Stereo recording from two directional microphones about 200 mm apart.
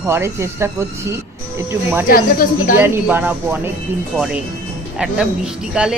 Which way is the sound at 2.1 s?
45° left (ahead or behind).